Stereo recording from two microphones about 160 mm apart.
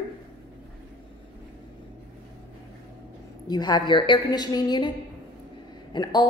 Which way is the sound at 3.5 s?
25° left (ahead or behind).